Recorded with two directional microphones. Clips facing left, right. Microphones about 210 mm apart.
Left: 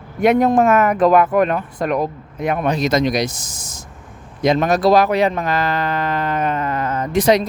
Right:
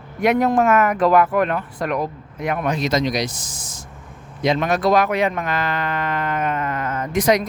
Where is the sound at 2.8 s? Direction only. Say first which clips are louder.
Left 3 dB; 55° left (ahead or behind); by 7.5 s 30° left (ahead or behind).